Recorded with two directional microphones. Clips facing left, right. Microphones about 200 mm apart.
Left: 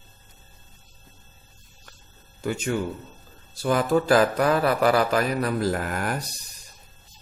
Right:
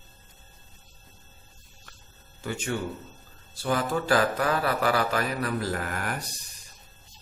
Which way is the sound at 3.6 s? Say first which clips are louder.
Left 5 dB; 40° left (ahead or behind).